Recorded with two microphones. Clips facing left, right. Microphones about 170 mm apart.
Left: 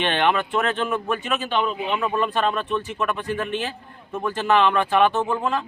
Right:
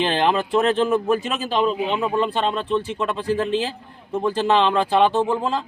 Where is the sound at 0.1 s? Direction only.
35° right (ahead or behind).